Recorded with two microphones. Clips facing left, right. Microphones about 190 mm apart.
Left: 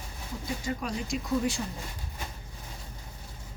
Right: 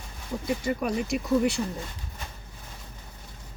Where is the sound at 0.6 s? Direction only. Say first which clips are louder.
Right 6 dB; 60° right (ahead or behind).